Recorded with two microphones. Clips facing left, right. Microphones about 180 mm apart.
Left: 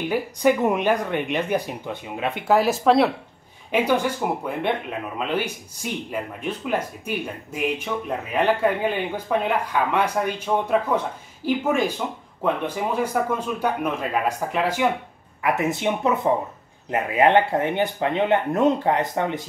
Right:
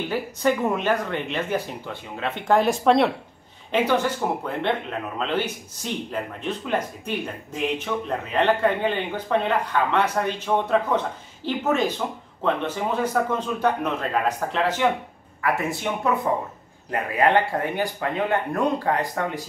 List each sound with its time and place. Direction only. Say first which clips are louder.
0.1 s speech: left 4 dB; 15° left (ahead or behind)